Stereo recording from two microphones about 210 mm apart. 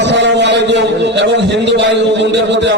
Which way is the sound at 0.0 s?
60° right (ahead or behind).